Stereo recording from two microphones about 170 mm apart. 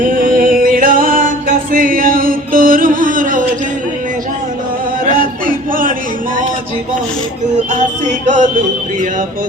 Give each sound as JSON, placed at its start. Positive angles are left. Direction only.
{"t": 0.0, "sound": "music", "side_deg": -55}
{"t": 5.1, "sound": "a sound", "side_deg": -55}
{"t": 7.7, "sound": "music", "side_deg": -45}